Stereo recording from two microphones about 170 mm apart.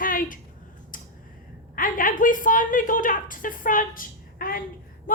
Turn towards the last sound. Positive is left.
turn(degrees=55)  # may be behind; listen again after turning